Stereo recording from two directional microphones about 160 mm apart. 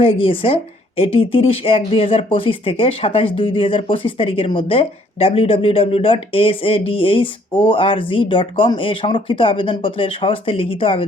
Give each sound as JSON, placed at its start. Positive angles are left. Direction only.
{"t": 0.0, "sound": "a woman's voice", "side_deg": 35}